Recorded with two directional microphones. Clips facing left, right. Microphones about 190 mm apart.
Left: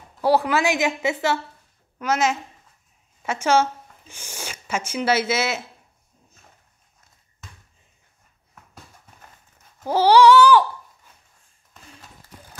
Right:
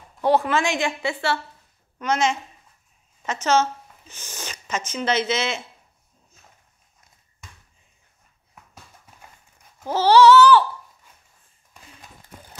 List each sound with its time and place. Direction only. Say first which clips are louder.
0.2 s speech: left 1 dB; 10° left (ahead or behind)
2.0 s a woman's voice: even; 5° left (ahead or behind)
9.8 s speech: even; 15° left (ahead or behind)